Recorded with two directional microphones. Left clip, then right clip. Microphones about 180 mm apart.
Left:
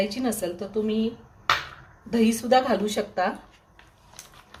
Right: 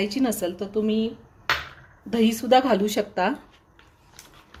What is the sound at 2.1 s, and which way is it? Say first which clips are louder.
A woman's voice: right 2 dB; 45° right (ahead or behind).